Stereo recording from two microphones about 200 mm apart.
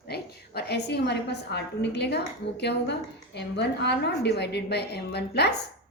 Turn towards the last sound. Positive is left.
turn(degrees=55)  # may be behind; listen again after turning